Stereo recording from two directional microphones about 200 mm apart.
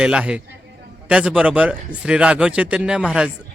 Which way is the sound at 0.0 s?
5° right (ahead or behind).